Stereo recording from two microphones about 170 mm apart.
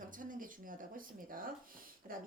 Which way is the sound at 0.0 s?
50° right (ahead or behind).